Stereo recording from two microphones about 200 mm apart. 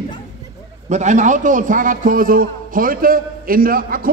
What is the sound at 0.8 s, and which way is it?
A man's voice, 35° right (ahead or behind).